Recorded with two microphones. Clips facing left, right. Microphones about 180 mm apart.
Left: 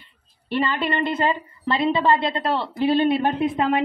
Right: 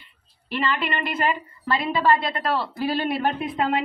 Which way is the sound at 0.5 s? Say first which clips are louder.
Left 3 dB; 30° left (ahead or behind).